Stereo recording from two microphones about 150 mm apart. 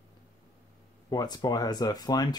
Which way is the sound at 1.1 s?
25° left (ahead or behind).